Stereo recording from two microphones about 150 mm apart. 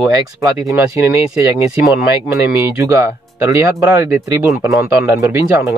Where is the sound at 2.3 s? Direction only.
20° right (ahead or behind).